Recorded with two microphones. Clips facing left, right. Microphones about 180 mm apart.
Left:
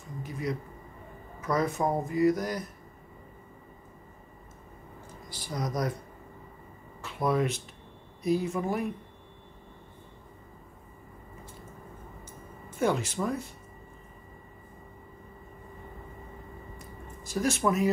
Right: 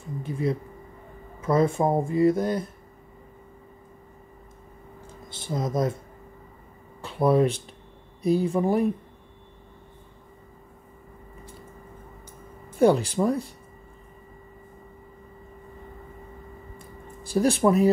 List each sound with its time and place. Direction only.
0.2 s speech: 30° right (ahead or behind)
5.3 s speech: 25° right (ahead or behind)
7.0 s speech: 30° right (ahead or behind)
12.7 s speech: 35° right (ahead or behind)
16.7 s a sound: 30° right (ahead or behind)